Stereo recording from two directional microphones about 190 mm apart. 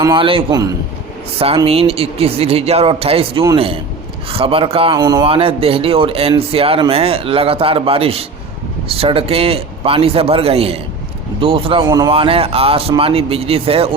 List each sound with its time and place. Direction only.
0.0 s a man's voice: 25° right (ahead or behind)
1.4 s a man's voice: 30° right (ahead or behind)